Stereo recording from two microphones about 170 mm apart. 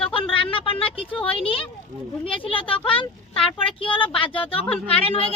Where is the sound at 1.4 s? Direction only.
30° left (ahead or behind).